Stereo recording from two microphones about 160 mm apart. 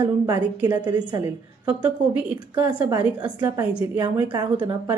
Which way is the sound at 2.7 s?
30° right (ahead or behind).